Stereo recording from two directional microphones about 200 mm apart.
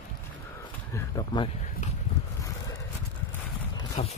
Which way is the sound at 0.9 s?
20° left (ahead or behind).